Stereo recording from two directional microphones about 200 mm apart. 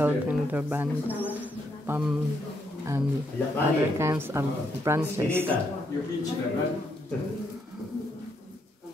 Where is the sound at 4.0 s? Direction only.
15° right (ahead or behind).